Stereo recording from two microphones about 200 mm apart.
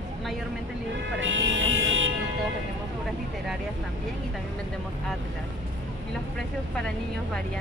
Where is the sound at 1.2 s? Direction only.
75° right (ahead or behind).